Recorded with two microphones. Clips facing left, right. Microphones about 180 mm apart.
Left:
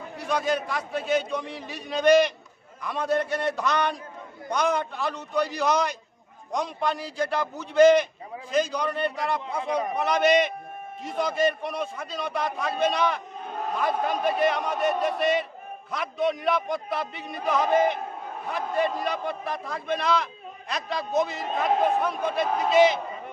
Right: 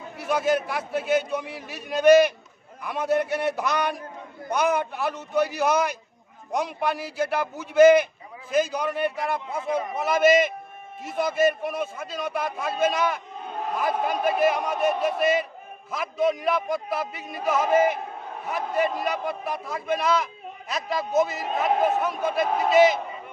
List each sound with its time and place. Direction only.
0.2 s a man's voice: 5° right (ahead or behind)
19.0 s a man's voice: 5° right (ahead or behind)